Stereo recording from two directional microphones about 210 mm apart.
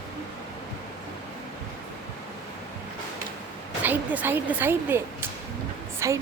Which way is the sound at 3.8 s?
10° right (ahead or behind).